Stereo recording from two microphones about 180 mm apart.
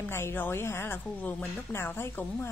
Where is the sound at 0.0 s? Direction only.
15° left (ahead or behind).